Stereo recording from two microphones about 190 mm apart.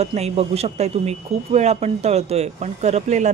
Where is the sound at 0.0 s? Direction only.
35° right (ahead or behind).